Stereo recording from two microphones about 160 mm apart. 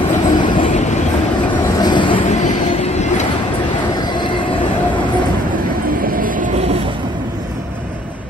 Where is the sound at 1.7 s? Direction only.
30° left (ahead or behind).